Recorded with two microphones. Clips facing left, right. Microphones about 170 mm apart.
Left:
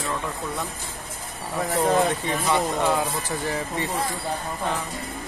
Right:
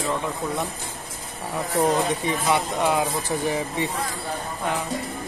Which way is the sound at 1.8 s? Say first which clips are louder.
Even; 15° right (ahead or behind).